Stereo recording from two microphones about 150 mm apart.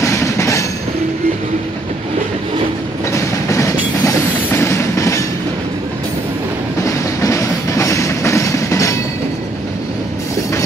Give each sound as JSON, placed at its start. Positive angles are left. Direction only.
{"t": 0.0, "sound": "train", "side_deg": 20}
{"t": 3.1, "sound": "train", "side_deg": 20}
{"t": 6.8, "sound": "train", "side_deg": 20}